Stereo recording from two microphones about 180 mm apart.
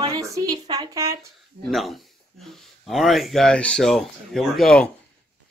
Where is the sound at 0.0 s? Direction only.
20° right (ahead or behind).